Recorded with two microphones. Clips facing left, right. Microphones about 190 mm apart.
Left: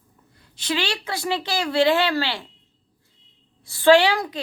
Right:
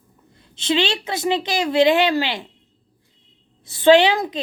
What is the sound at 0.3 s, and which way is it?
A woman's voice, 25° right (ahead or behind).